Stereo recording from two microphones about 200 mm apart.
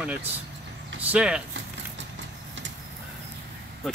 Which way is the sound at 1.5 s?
65° right (ahead or behind).